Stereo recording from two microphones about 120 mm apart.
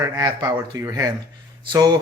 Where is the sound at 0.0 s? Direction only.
30° right (ahead or behind).